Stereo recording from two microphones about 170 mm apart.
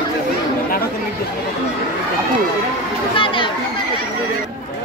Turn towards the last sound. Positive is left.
turn(degrees=30)  # may be behind; listen again after turning